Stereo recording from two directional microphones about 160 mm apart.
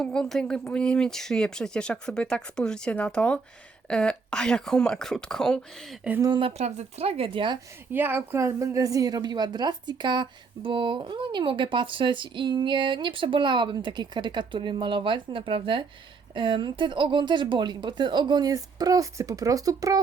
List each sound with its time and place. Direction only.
0.0 s speech: 5° left (ahead or behind)
6.1 s speech: 15° right (ahead or behind)
6.6 s speech: 45° right (ahead or behind)
7.9 s a woman's voice: 10° right (ahead or behind)